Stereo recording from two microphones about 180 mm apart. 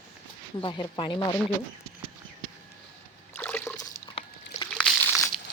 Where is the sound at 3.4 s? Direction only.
10° left (ahead or behind).